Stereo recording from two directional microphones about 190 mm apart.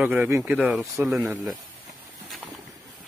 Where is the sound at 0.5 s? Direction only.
Centre (ahead or behind).